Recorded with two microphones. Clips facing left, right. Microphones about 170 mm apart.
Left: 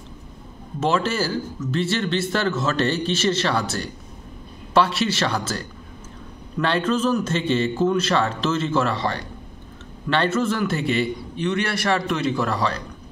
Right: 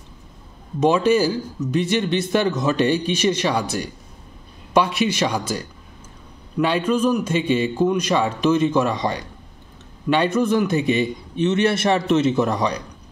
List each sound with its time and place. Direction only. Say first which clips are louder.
0.7 s a man's voice: right 5 dB; 15° right (ahead or behind)